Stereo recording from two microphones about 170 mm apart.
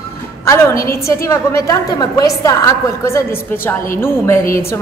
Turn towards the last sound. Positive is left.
turn(degrees=15)  # may be behind; listen again after turning